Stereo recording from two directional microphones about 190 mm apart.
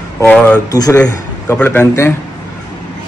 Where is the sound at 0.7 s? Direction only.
20° left (ahead or behind).